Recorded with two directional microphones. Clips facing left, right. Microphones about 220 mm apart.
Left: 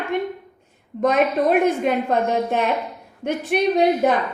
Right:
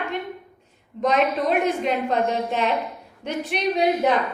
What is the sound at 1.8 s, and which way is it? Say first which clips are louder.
A woman's voice: left 2 dB; 50° left (ahead or behind).